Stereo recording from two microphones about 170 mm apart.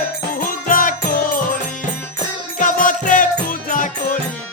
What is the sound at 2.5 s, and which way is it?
Music, 50° left (ahead or behind).